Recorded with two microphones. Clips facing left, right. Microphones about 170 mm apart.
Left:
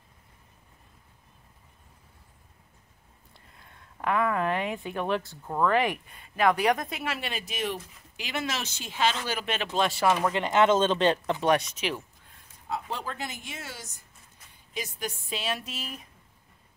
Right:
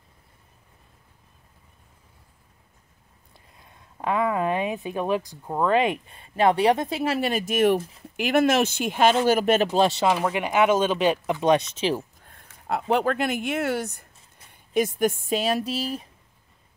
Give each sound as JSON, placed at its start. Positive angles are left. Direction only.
{"t": 4.0, "sound": "speech", "side_deg": -20}
{"t": 10.1, "sound": "speech", "side_deg": -10}
{"t": 11.4, "sound": "speech", "side_deg": -25}
{"t": 12.2, "sound": "speech", "side_deg": -55}